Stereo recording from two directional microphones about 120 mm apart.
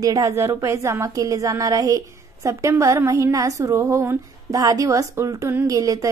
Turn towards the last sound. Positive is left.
turn(degrees=-30)  # may be behind; listen again after turning